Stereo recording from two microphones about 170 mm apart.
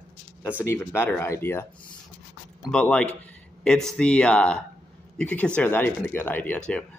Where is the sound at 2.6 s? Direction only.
5° left (ahead or behind).